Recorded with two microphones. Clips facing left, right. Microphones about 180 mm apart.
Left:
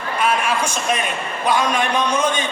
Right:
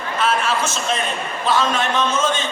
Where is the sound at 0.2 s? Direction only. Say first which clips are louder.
Even; 15° left (ahead or behind).